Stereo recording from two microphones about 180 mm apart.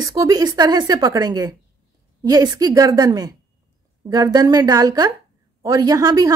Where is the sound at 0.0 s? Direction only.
20° right (ahead or behind).